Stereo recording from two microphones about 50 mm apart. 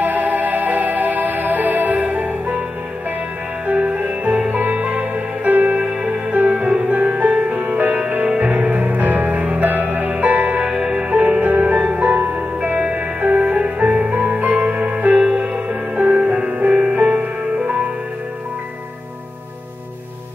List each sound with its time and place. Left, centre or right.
0.0 s music: right
3.6 s music: right
5.9 s music: centre; by 10.6 s right
10.6 s music: centre
11.1 s music: right
15.1 s music: centre